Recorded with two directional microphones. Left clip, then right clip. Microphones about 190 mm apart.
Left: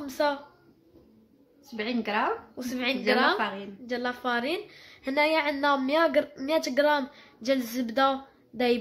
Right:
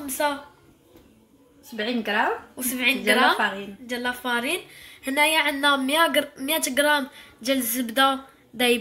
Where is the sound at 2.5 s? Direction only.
25° left (ahead or behind).